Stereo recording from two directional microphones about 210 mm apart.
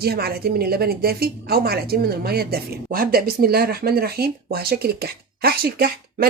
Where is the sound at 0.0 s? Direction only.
50° right (ahead or behind).